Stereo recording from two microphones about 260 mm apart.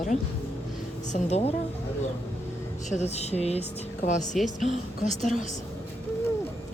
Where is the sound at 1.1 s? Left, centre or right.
Left.